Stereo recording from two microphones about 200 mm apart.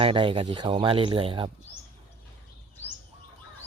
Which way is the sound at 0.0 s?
25° right (ahead or behind).